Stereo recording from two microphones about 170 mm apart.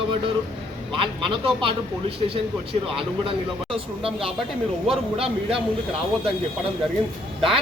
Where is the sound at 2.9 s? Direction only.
30° right (ahead or behind).